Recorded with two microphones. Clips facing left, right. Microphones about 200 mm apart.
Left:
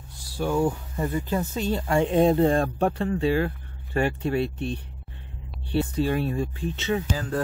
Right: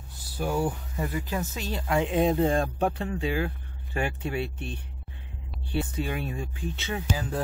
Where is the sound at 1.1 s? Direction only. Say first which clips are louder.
Left 7 dB; 10° right (ahead or behind).